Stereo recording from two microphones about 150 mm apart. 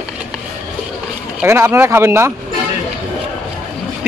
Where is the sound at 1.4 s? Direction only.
15° right (ahead or behind).